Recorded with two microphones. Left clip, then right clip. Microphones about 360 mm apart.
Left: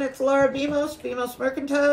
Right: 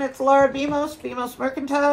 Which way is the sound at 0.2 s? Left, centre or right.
Centre.